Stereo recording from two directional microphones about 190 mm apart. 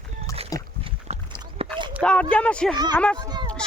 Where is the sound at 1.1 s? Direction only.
30° right (ahead or behind).